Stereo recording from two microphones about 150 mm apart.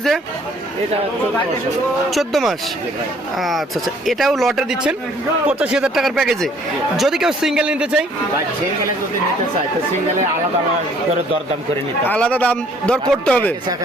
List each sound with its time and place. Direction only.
2.0 s speech: centre (ahead or behind)
12.0 s a man's voice: 10° left (ahead or behind)